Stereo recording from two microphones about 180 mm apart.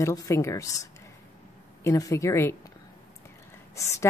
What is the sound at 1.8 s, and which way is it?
Speech, 20° left (ahead or behind).